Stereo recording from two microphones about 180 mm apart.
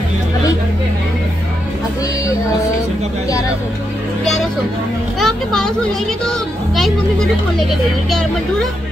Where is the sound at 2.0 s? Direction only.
20° left (ahead or behind).